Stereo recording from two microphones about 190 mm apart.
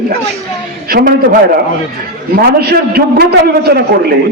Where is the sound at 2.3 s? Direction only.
55° right (ahead or behind).